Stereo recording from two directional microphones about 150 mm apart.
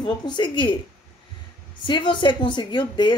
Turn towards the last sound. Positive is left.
turn(degrees=30)  # may be behind; listen again after turning